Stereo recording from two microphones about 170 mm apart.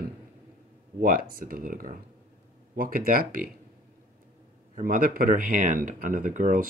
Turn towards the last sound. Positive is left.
turn(degrees=-50)  # may be behind; listen again after turning